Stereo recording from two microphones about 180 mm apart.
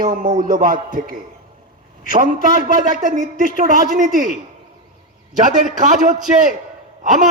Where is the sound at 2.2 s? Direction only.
50° right (ahead or behind).